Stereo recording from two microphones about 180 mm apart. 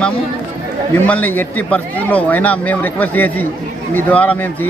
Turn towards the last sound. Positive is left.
turn(degrees=10)  # may be behind; listen again after turning